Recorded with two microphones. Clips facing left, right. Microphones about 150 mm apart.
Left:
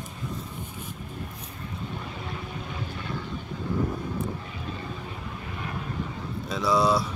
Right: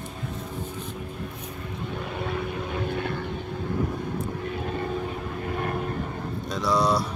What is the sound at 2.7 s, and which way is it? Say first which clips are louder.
Vehicle: right 6 dB; 60° right (ahead or behind).